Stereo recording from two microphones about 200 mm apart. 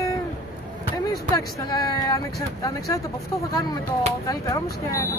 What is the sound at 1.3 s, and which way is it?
Speech, 20° left (ahead or behind).